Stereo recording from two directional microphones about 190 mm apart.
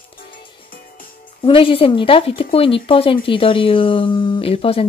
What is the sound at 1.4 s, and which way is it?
Speech, 30° left (ahead or behind).